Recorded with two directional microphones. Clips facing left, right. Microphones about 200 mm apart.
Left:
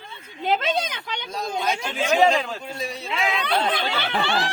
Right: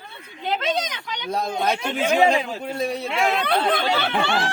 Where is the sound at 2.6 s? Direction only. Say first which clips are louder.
Right 6 dB; 60° right (ahead or behind).